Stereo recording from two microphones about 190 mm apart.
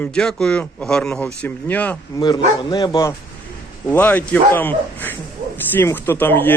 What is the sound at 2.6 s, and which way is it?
Speech, 25° left (ahead or behind).